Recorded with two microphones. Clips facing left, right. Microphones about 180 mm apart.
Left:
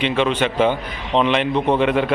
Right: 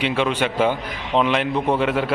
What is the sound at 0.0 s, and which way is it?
A man's voice, 10° right (ahead or behind).